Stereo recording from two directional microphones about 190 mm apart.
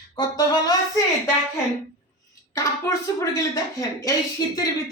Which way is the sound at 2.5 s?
15° left (ahead or behind).